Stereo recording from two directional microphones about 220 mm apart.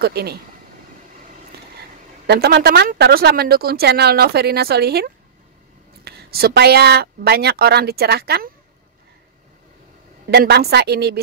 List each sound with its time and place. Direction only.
0.0 s speech: 45° right (ahead or behind)
2.2 s speech: 50° right (ahead or behind)
10.3 s speech: 45° right (ahead or behind)